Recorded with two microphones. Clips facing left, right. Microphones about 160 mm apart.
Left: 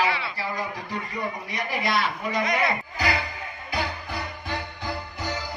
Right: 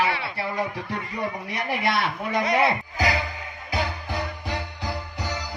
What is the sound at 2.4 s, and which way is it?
Speech, 30° right (ahead or behind).